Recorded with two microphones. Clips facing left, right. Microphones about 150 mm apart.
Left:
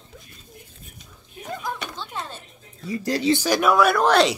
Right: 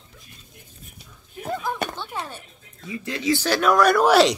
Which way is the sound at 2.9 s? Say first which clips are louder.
Left 3 dB; 35° left (ahead or behind).